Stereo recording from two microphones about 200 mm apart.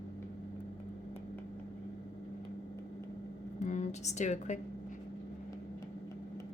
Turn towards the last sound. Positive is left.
turn(degrees=35)  # may be behind; listen again after turning